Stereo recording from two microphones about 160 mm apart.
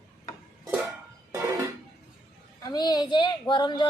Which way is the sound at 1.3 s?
15° right (ahead or behind).